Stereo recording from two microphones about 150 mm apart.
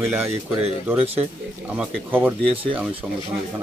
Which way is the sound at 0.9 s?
40° right (ahead or behind).